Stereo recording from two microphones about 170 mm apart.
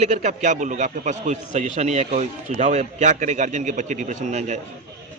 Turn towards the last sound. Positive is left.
turn(degrees=-45)  # may be behind; listen again after turning